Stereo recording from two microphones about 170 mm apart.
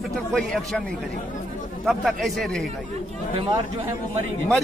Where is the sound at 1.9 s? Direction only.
Centre (ahead or behind).